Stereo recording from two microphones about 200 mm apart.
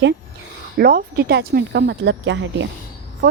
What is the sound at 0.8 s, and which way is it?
Speech, 50° right (ahead or behind).